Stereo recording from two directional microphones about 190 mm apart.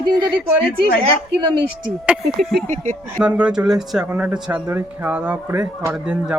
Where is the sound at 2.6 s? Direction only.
40° right (ahead or behind).